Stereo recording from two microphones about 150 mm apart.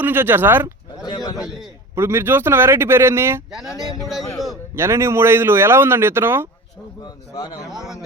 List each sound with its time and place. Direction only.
0.0 s a man's voice: 15° right (ahead or behind)
1.0 s a man's voice: 30° left (ahead or behind)
1.4 s speech: 5° right (ahead or behind)
2.0 s a man's voice: 15° right (ahead or behind)
4.0 s speech: centre (ahead or behind)
4.7 s a man's voice: 15° right (ahead or behind)
7.0 s a man's voice: 30° left (ahead or behind)
7.7 s speech: 5° right (ahead or behind)